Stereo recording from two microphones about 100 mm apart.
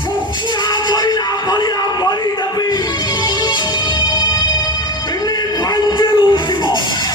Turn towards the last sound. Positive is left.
turn(degrees=50)  # may be behind; listen again after turning